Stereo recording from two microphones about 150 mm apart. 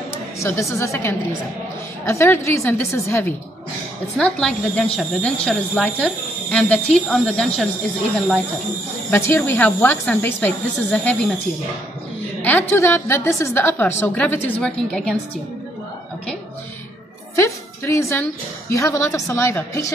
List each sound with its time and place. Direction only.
0.4 s a woman's voice: 20° left (ahead or behind)
4.2 s speech: 5° left (ahead or behind)
9.1 s a woman's voice: 15° left (ahead or behind)
12.4 s a woman's voice: 10° left (ahead or behind)
17.4 s a woman's voice: 20° left (ahead or behind)